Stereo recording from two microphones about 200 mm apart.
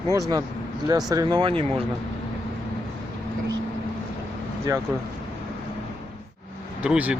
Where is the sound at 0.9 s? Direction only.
20° right (ahead or behind).